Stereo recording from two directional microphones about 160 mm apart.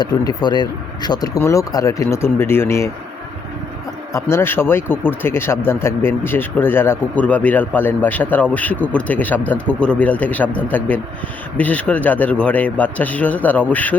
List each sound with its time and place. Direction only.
0.0 s speech: 25° left (ahead or behind)
4.1 s speech: 15° left (ahead or behind)